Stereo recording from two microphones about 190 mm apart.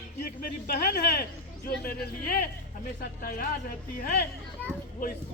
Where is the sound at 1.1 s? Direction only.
55° left (ahead or behind).